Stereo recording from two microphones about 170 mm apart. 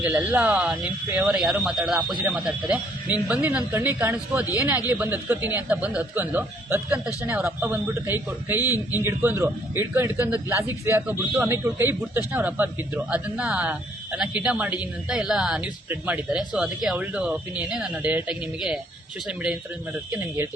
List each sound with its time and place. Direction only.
0.0 s a man's voice: 10° right (ahead or behind)
8.6 s a man's voice: 20° left (ahead or behind)
9.0 s a man's voice: 15° right (ahead or behind)